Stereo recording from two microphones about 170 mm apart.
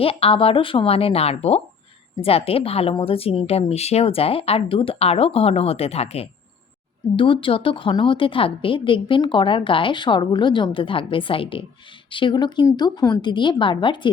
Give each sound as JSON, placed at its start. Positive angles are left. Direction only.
{"t": 0.0, "sound": "a woman's voice", "side_deg": 35}